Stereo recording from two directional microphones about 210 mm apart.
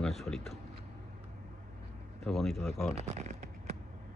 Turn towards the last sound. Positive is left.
turn(degrees=-35)  # may be behind; listen again after turning